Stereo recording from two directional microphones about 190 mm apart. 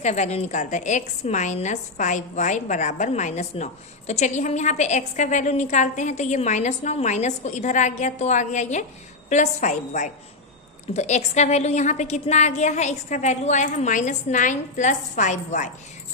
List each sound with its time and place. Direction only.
0.0 s a woman's voice: 35° left (ahead or behind)